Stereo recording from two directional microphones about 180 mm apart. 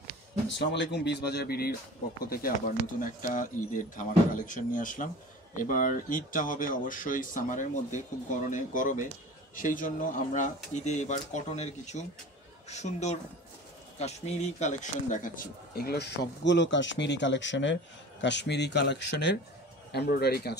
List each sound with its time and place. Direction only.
0.7 s a man's voice: 70° left (ahead or behind); by 17.7 s 90° left
18.2 s speech: 75° left (ahead or behind)